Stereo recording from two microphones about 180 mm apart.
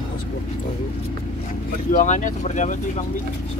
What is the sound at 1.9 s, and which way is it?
Speech, 45° left (ahead or behind).